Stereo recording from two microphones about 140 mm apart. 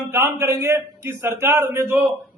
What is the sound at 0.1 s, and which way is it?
A man's voice, 20° right (ahead or behind).